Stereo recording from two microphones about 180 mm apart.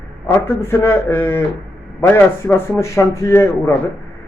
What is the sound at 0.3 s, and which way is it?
A man's voice, 15° left (ahead or behind).